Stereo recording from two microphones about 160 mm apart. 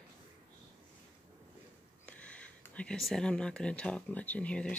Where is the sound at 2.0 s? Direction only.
10° left (ahead or behind).